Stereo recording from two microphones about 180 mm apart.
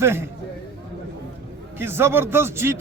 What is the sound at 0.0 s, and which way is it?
Speech, 15° right (ahead or behind).